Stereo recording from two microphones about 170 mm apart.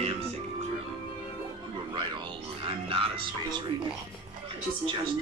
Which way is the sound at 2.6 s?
30° right (ahead or behind).